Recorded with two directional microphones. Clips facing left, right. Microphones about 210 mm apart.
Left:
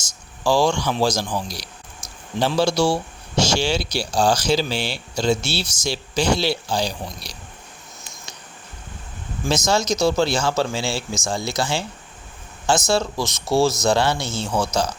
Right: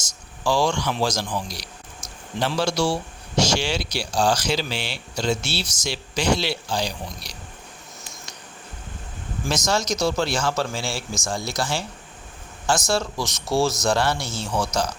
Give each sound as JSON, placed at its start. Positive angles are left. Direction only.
{"t": 0.0, "sound": "speech", "side_deg": 30}
{"t": 9.5, "sound": "speech", "side_deg": 25}